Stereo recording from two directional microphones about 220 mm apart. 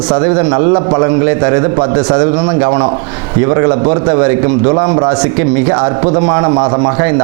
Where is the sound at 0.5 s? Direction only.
25° right (ahead or behind).